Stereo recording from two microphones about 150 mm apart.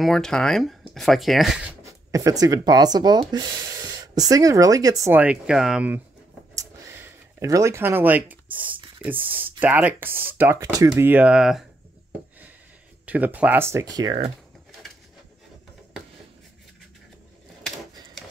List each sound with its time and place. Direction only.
0.0 s speech: 5° left (ahead or behind)
2.0 s speech: 20° right (ahead or behind)
5.1 s speech: 10° right (ahead or behind)
6.5 s a sound: 20° right (ahead or behind)
9.0 s speech: 10° right (ahead or behind)
13.0 s speech: 10° right (ahead or behind)